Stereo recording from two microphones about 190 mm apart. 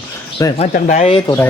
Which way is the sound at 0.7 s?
40° left (ahead or behind).